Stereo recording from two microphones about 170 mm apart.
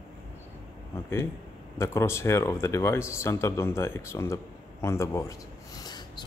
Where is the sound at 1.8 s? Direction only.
15° left (ahead or behind).